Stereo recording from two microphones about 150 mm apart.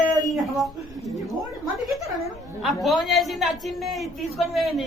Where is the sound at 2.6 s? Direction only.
Centre (ahead or behind).